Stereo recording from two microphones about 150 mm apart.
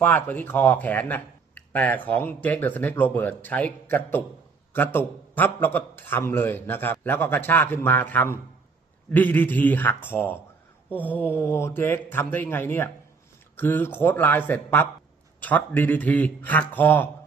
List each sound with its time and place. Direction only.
0.0 s speech: 10° left (ahead or behind)
4.7 s speech: 10° left (ahead or behind)